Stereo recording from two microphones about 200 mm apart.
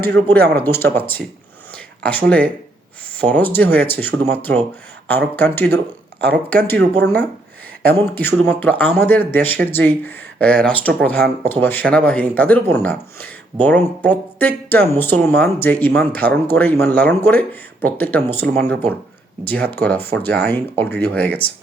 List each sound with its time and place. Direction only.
0.0 s speech: 10° left (ahead or behind)